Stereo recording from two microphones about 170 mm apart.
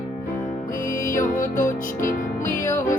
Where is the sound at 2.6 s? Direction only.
15° left (ahead or behind).